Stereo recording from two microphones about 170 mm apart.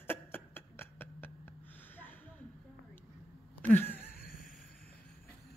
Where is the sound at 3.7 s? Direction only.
10° left (ahead or behind).